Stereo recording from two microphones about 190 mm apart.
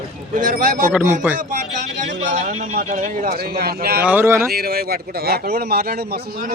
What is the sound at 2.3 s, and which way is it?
Speech, 40° right (ahead or behind).